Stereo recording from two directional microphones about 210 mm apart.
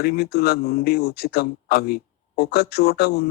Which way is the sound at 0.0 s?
50° left (ahead or behind).